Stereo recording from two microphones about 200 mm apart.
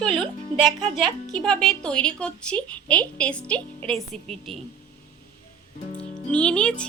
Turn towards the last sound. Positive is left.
turn(degrees=5)  # may be behind; listen again after turning